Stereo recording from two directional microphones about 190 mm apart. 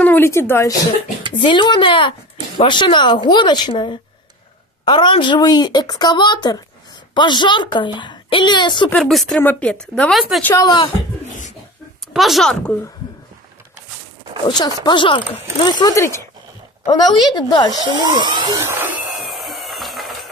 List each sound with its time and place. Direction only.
0.0 s a woman's voice: 10° left (ahead or behind)
1.4 s a woman's voice: 25° left (ahead or behind)
8.9 s speech: centre (ahead or behind)
10.4 s speech: 10° left (ahead or behind)
12.1 s speech: centre (ahead or behind)
14.5 s a woman's voice: 20° left (ahead or behind)
17.7 s a sound: 20° right (ahead or behind); by 20.2 s centre (ahead or behind)